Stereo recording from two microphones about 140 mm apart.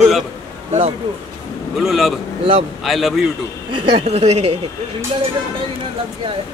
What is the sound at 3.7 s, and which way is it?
Speech, 40° right (ahead or behind).